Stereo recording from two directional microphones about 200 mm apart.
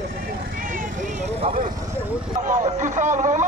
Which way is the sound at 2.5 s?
40° right (ahead or behind).